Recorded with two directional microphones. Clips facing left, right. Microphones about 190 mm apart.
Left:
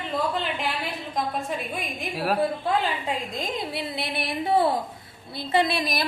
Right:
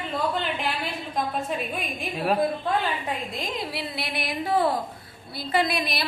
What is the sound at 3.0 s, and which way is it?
Speech, 10° left (ahead or behind).